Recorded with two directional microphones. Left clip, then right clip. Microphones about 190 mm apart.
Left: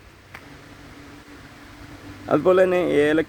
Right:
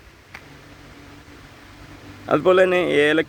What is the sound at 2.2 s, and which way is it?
Speech, centre (ahead or behind).